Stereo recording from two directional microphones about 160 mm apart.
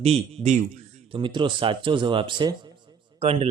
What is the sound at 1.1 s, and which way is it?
A man's voice, 30° right (ahead or behind).